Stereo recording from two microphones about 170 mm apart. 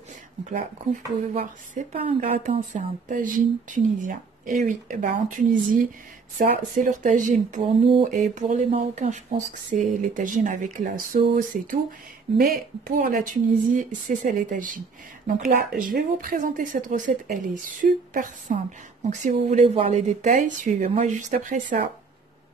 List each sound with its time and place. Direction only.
1.3 s a woman's voice: 40° right (ahead or behind)